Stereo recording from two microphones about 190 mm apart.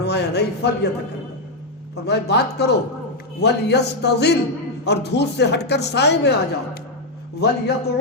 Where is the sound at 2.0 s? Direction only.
60° left (ahead or behind).